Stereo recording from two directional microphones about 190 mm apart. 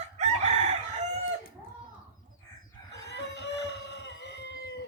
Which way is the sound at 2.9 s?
60° left (ahead or behind).